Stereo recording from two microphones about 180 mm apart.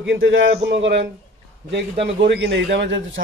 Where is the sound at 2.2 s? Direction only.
80° right.